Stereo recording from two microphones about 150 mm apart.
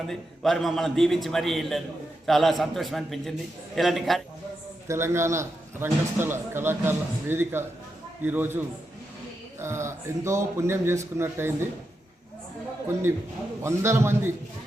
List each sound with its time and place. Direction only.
0.1 s a man's voice: centre (ahead or behind)
4.9 s a man's voice: 15° right (ahead or behind)
13.6 s a man's voice: 20° right (ahead or behind)